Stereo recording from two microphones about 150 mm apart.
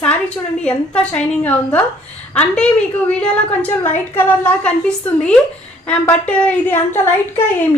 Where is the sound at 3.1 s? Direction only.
10° left (ahead or behind).